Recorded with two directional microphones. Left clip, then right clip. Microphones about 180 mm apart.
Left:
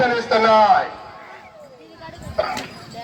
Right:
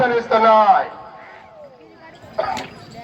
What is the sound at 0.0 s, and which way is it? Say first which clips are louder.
Speech: right 2 dB; 60° left (ahead or behind).